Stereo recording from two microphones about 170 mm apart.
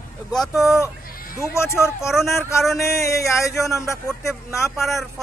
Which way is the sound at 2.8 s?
15° left (ahead or behind).